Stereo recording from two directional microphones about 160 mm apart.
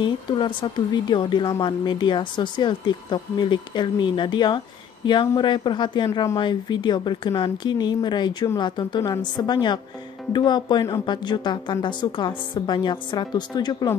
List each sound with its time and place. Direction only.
0.0 s speech: 30° left (ahead or behind)